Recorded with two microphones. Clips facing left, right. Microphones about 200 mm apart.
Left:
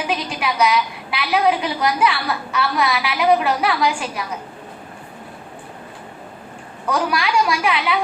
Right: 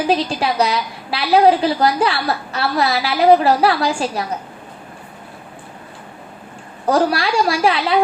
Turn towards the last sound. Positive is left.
turn(degrees=-35)  # may be behind; listen again after turning